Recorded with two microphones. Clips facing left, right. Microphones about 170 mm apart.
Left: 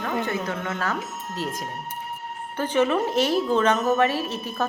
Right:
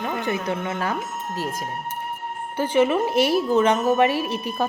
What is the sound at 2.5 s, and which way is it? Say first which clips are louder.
A woman's voice: right 2 dB; 10° right (ahead or behind).